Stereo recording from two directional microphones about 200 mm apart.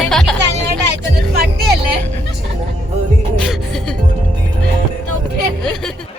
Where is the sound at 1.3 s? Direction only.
50° right (ahead or behind).